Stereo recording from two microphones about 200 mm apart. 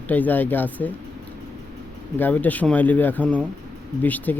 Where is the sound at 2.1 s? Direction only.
10° left (ahead or behind).